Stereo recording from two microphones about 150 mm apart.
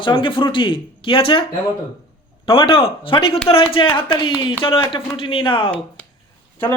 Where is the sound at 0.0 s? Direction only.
35° left (ahead or behind).